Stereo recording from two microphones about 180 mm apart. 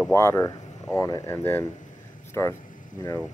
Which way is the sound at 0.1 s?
15° left (ahead or behind).